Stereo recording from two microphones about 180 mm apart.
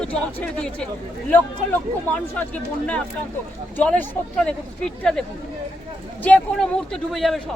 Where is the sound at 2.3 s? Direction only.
10° left (ahead or behind).